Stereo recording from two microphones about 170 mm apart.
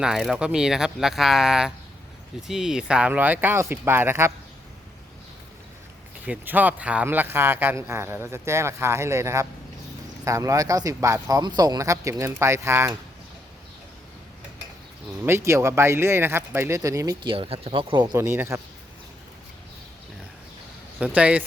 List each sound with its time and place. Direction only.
0.0 s speech: 5° right (ahead or behind)
6.2 s speech: 10° right (ahead or behind)
15.2 s speech: 15° right (ahead or behind)
17.3 s speech: 30° right (ahead or behind); by 18.6 s 15° right (ahead or behind)
21.0 s speech: 5° right (ahead or behind)